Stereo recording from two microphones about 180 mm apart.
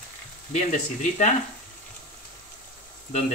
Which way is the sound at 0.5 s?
40° left (ahead or behind).